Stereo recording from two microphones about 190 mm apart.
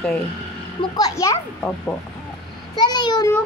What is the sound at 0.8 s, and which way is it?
A child's voice, 20° left (ahead or behind).